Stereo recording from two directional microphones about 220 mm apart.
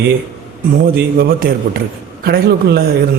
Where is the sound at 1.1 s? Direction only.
45° right (ahead or behind).